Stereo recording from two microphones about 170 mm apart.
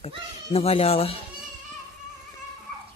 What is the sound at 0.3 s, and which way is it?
Speech, 35° left (ahead or behind).